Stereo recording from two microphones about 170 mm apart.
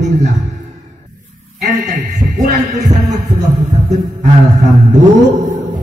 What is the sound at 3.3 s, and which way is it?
Music, 45° right (ahead or behind).